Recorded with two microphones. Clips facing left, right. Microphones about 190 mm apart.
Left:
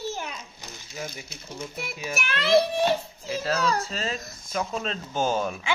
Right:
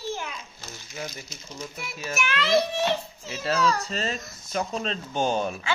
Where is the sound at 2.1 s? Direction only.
30° left (ahead or behind).